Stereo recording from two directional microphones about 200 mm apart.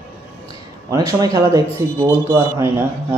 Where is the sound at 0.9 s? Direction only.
15° right (ahead or behind).